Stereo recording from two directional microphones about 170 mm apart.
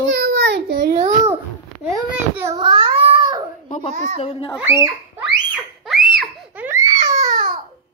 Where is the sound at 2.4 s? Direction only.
25° right (ahead or behind).